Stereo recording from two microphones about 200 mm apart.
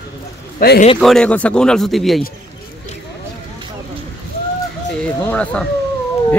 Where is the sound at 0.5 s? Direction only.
50° left (ahead or behind).